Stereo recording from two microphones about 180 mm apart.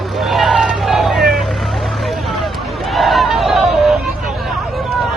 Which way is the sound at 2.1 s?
Centre (ahead or behind).